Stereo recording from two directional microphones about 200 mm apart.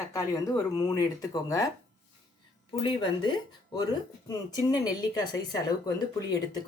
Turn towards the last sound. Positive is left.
turn(degrees=20)  # may be behind; listen again after turning